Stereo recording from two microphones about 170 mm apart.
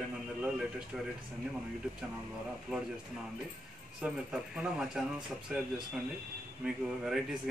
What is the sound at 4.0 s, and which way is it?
Speech, 5° right (ahead or behind).